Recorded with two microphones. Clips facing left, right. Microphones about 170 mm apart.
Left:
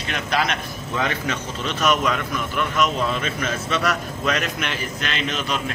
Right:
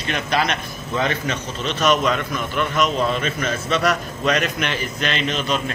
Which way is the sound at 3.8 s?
Centre (ahead or behind).